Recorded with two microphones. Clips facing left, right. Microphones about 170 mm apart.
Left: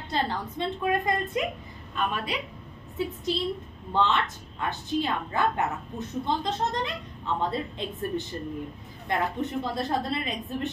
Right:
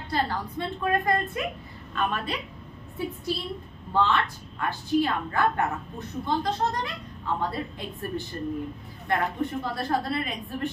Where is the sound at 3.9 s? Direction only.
20° left (ahead or behind).